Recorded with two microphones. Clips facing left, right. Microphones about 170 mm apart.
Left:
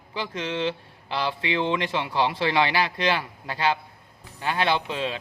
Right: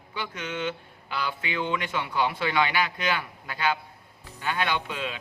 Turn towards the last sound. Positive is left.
turn(degrees=30)  # may be behind; listen again after turning